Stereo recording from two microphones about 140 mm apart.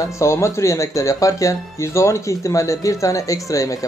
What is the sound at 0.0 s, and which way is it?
Speech, 20° left (ahead or behind).